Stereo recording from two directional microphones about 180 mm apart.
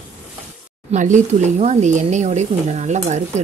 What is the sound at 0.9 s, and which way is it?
Speech, 40° right (ahead or behind).